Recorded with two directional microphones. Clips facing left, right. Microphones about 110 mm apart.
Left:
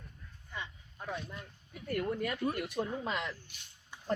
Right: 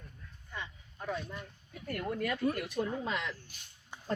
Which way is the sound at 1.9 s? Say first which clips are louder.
Left 2 dB; centre (ahead or behind).